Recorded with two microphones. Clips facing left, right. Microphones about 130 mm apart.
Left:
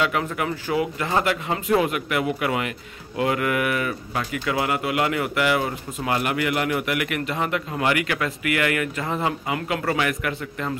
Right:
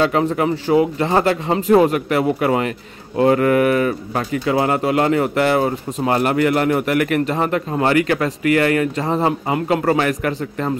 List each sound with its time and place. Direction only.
0.0 s speech: 30° right (ahead or behind)